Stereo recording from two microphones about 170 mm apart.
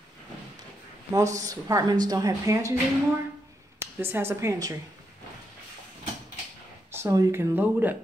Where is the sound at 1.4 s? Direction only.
20° right (ahead or behind).